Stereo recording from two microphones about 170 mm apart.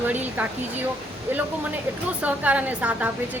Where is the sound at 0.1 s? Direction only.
10° right (ahead or behind).